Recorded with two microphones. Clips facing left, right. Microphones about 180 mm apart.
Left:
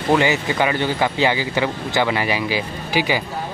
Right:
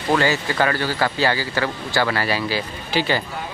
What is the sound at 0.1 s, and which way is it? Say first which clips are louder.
Speech: left 2 dB; 15° left (ahead or behind).